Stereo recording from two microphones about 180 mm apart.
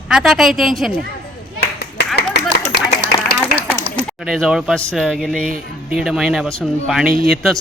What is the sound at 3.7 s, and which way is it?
A man's voice, centre (ahead or behind).